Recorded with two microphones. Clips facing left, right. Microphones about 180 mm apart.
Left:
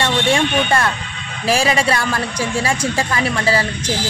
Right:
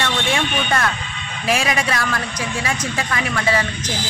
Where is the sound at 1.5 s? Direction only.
30° left (ahead or behind).